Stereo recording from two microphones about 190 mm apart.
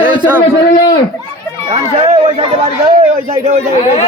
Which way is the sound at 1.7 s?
35° right (ahead or behind).